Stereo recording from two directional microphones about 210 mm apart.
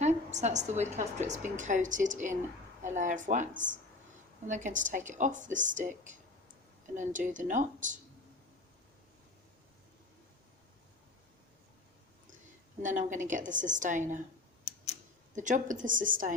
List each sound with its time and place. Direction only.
0.0 s a sound: 35° right (ahead or behind)
0.9 s a woman's voice: 35° right (ahead or behind)
12.8 s a woman's voice: 35° right (ahead or behind)
15.4 s a woman's voice: 35° right (ahead or behind)